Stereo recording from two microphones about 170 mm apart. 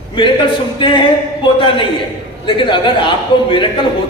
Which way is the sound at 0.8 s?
30° left (ahead or behind).